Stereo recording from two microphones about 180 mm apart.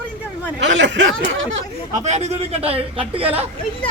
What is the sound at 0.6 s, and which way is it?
Speech, 85° right.